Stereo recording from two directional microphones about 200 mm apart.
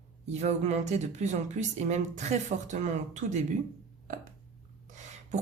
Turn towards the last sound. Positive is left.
turn(degrees=-35)  # may be behind; listen again after turning